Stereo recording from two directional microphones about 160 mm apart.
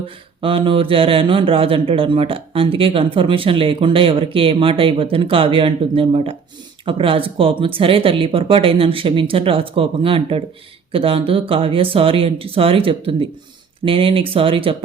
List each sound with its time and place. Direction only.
0.4 s speech: 35° right (ahead or behind)